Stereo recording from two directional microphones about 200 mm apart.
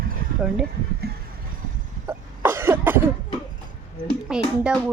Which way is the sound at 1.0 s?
50° right (ahead or behind).